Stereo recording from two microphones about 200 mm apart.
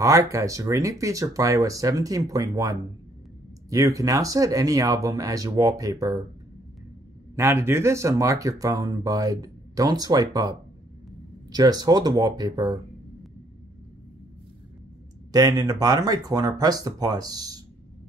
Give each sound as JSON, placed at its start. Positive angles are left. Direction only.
{"t": 0.0, "sound": "speech", "side_deg": -15}
{"t": 7.3, "sound": "speech", "side_deg": -15}
{"t": 11.5, "sound": "speech", "side_deg": -20}
{"t": 15.3, "sound": "speech", "side_deg": -20}